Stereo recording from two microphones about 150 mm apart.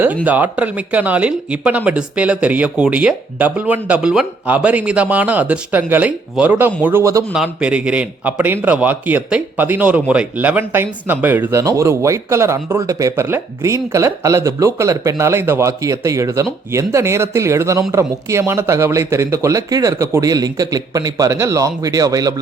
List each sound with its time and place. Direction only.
0.3 s a man's voice: 10° right (ahead or behind)
7.3 s a man's voice: 5° right (ahead or behind); by 22.4 s 25° right (ahead or behind)